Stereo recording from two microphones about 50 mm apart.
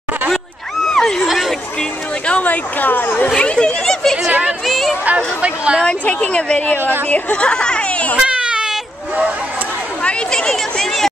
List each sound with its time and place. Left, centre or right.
0.8 s a sound: centre
1.2 s chatter: centre
2.2 s speech: left
3.3 s speech: left
4.3 s speech: right
4.6 s speech: centre
5.0 s speech: right
5.8 s speech: left
6.8 s a woman's voice: right
7.1 s speech: left
8.2 s baby cry: right
10.0 s a sound: centre
10.5 s speech: centre